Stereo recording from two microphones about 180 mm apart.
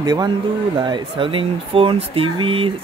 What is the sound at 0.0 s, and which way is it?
Speech, 20° right (ahead or behind).